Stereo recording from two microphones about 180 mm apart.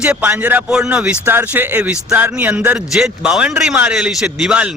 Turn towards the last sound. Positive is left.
turn(degrees=-5)  # may be behind; listen again after turning